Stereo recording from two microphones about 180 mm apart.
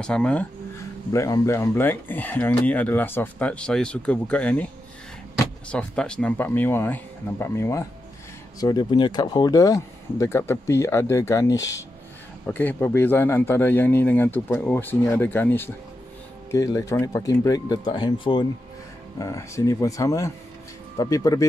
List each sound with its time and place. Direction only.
0.0 s speech: 5° left (ahead or behind)
1.1 s speech: 15° left (ahead or behind)
5.7 s speech: 5° left (ahead or behind)